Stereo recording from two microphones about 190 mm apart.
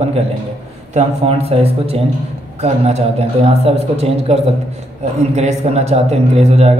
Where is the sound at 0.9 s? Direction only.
30° right (ahead or behind).